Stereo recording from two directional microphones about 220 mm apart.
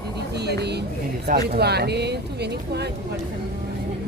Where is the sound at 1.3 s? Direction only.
45° right (ahead or behind).